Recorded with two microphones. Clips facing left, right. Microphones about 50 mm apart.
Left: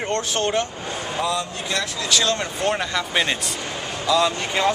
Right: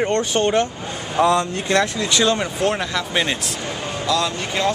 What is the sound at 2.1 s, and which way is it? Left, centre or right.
Speech, centre.